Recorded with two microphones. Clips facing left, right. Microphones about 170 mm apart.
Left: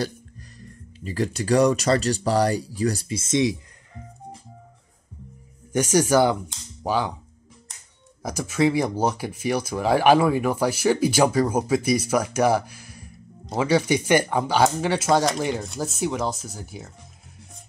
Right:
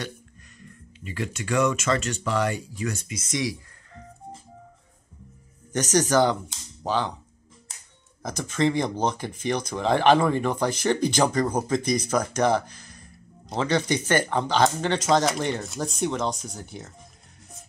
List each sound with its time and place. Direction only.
0.0 s speech: 35° left (ahead or behind)
5.7 s speech: 10° left (ahead or behind)
8.2 s speech: 10° left (ahead or behind)